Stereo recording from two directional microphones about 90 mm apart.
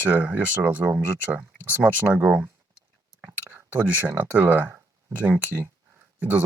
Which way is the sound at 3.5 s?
20° right (ahead or behind).